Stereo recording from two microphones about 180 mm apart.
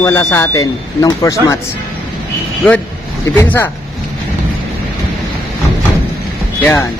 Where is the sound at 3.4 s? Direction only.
10° left (ahead or behind).